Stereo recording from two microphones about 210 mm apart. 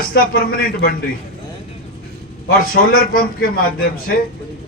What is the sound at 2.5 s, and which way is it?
A man's voice, 45° left (ahead or behind).